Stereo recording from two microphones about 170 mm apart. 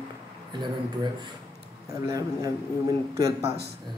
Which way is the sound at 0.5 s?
25° right (ahead or behind).